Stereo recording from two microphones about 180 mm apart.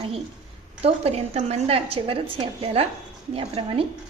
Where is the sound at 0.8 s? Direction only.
35° right (ahead or behind).